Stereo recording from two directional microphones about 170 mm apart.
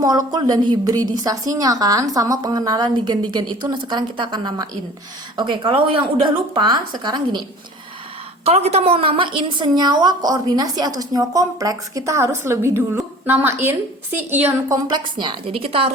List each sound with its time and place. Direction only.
0.0 s a woman's voice: 20° right (ahead or behind)
8.4 s a woman's voice: 35° right (ahead or behind); by 14.8 s 10° right (ahead or behind)
14.8 s a woman's voice: 25° right (ahead or behind)